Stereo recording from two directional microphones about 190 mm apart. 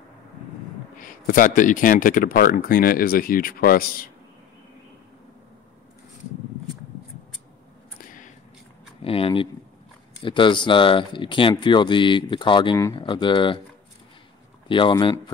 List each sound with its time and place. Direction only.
0.9 s speech: 45° left (ahead or behind)
8.0 s a sound: 45° left (ahead or behind)
9.0 s speech: 30° left (ahead or behind)
14.7 s speech: 25° left (ahead or behind)